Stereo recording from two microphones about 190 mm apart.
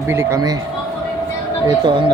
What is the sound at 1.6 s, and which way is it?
Speech, 25° right (ahead or behind).